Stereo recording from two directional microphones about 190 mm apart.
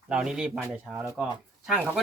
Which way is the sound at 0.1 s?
5° right (ahead or behind).